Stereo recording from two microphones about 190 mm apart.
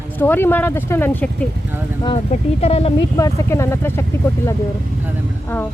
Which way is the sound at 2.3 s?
35° left (ahead or behind).